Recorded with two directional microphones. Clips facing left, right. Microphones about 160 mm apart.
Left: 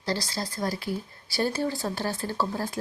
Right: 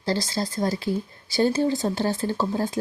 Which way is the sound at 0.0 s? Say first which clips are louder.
Right 5 dB; 25° right (ahead or behind).